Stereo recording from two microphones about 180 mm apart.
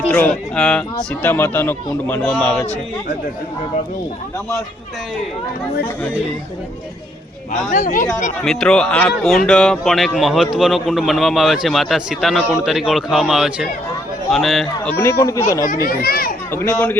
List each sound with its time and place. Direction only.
0.1 s speech: 5° left (ahead or behind)
7.7 s speech: 45° left (ahead or behind)
8.4 s a man's voice: 5° left (ahead or behind)
15.2 s speech: 15° left (ahead or behind)
15.9 s a child's voice: 55° left (ahead or behind)
16.5 s speech: 10° left (ahead or behind)